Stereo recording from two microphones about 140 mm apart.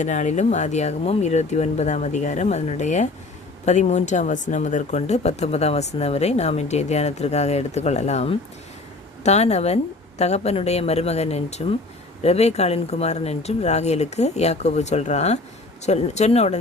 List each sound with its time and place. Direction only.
0.0 s speech: 60° left (ahead or behind)